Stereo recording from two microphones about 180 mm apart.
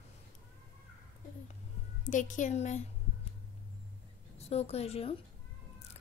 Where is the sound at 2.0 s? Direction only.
45° left (ahead or behind).